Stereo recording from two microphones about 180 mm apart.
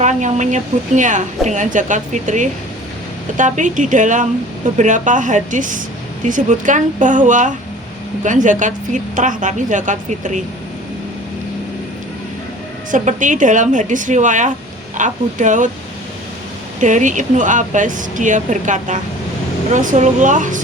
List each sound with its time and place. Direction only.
0.0 s speech: 40° right (ahead or behind)
12.9 s speech: 45° right (ahead or behind)
16.8 s speech: 45° right (ahead or behind)